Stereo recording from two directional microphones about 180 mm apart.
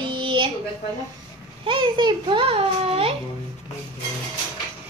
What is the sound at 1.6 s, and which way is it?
A child's voice, 25° right (ahead or behind).